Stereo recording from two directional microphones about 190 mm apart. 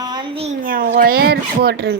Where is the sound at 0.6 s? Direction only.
50° right (ahead or behind).